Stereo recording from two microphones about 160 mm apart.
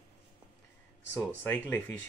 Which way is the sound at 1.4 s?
10° left (ahead or behind).